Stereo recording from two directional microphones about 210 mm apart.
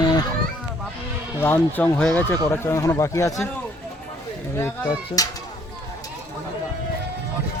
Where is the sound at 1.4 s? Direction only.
10° left (ahead or behind).